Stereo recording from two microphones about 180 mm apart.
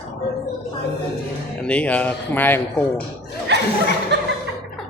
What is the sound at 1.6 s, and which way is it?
Speech, 5° left (ahead or behind).